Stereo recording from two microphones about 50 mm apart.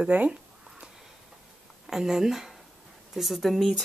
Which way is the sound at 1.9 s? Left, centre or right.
Centre.